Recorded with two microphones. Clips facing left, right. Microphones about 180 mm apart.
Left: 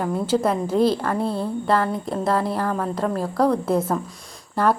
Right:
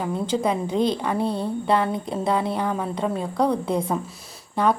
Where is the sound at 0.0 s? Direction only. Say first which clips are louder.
Left 2 dB; 5° left (ahead or behind).